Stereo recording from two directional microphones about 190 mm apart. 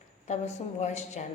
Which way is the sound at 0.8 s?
35° left (ahead or behind).